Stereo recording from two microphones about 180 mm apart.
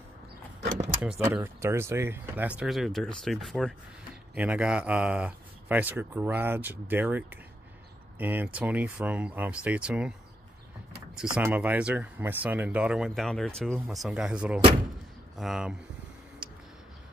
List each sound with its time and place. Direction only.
1.0 s speech: 5° right (ahead or behind)
11.1 s speech: 10° right (ahead or behind)